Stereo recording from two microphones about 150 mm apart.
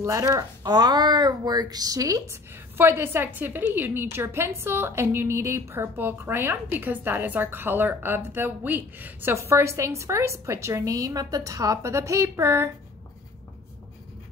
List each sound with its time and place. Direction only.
0.0 s a woman's voice: 20° right (ahead or behind)